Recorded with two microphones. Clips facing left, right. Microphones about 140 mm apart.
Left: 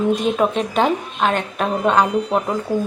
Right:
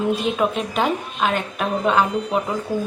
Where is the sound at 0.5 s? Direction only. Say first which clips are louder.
Left 3 dB; 5° right (ahead or behind).